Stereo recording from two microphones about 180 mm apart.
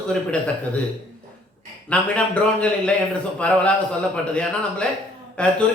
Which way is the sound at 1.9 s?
5° left (ahead or behind).